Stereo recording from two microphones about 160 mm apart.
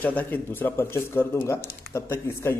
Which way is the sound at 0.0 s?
10° left (ahead or behind).